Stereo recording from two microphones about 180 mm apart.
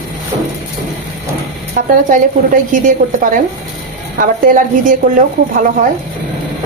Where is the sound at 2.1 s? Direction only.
45° right (ahead or behind).